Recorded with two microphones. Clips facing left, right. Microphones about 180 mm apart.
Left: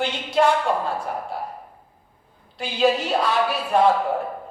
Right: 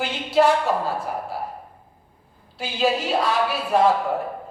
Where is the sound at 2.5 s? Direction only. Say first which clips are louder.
Left 2 dB; centre (ahead or behind).